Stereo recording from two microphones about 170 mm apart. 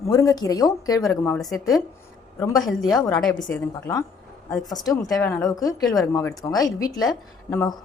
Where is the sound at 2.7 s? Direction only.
Centre (ahead or behind).